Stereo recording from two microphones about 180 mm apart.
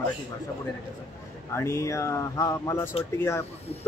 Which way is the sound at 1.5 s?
15° left (ahead or behind).